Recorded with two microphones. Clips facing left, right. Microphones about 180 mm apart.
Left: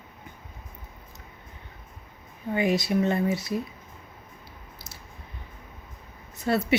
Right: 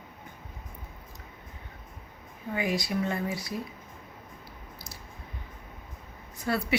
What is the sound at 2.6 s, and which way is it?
Speech, 25° left (ahead or behind).